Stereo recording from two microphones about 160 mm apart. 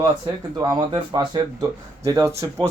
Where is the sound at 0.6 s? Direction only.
25° right (ahead or behind).